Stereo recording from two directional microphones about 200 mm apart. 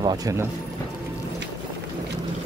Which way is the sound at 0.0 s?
20° right (ahead or behind).